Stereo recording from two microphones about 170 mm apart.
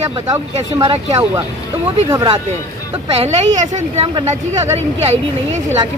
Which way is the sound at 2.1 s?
25° right (ahead or behind).